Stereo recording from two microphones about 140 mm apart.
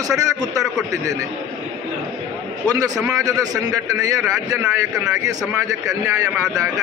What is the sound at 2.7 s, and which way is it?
A man's voice, 25° right (ahead or behind).